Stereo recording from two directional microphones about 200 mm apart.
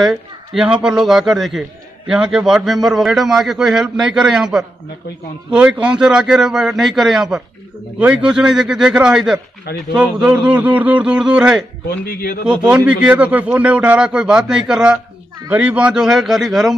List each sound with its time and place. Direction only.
0.0 s speech: 5° right (ahead or behind)
12.1 s a man's voice: 50° left (ahead or behind)
12.6 s speech: 5° right (ahead or behind)